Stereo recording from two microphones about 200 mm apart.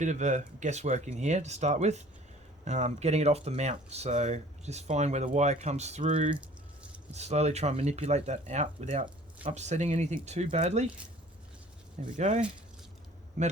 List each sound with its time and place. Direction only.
0.0 s speech: 35° right (ahead or behind)
12.0 s speech: 35° right (ahead or behind)